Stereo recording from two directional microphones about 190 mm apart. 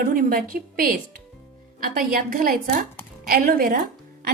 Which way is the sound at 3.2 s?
50° right (ahead or behind).